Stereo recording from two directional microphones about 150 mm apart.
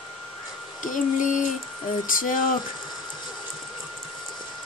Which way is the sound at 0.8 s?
60° left (ahead or behind).